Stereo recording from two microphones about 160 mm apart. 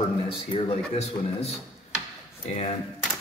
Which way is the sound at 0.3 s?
35° left (ahead or behind).